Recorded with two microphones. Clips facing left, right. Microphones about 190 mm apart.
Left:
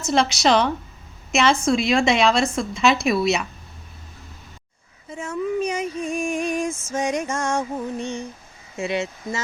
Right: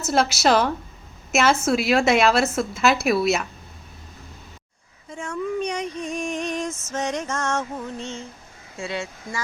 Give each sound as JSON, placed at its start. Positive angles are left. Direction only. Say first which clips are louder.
{"t": 0.0, "sound": "a woman's voice", "louder": "left 1 dB", "side_deg": -5}
{"t": 5.0, "sound": "female singing", "louder": "left 2 dB", "side_deg": 5}
{"t": 8.8, "sound": "speech", "louder": "left 5 dB", "side_deg": 20}